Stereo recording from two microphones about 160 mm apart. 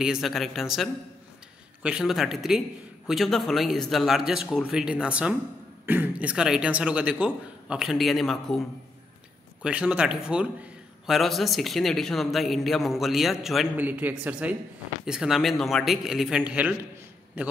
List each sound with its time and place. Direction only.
0.0 s a man's voice: centre (ahead or behind)